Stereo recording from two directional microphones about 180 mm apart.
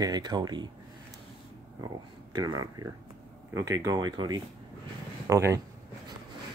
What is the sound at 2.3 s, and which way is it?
Speech, 20° right (ahead or behind).